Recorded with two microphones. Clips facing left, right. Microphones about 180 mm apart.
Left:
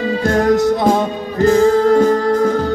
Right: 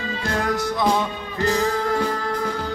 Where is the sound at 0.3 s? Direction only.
40° left (ahead or behind).